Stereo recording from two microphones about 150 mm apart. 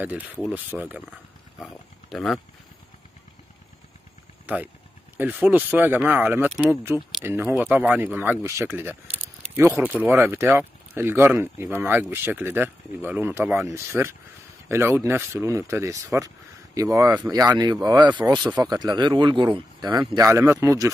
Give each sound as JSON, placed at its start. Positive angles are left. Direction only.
{"t": 0.0, "sound": "speech", "side_deg": -10}
{"t": 4.5, "sound": "speech", "side_deg": -10}